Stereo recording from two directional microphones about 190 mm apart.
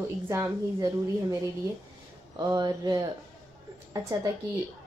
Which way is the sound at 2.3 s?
20° right (ahead or behind).